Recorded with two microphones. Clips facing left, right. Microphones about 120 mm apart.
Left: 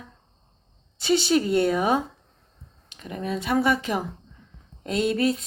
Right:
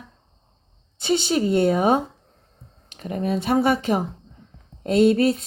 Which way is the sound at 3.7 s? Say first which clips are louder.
Right 4 dB; 30° right (ahead or behind).